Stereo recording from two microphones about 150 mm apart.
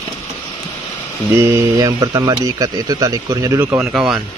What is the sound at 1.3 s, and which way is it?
Speech, 15° right (ahead or behind).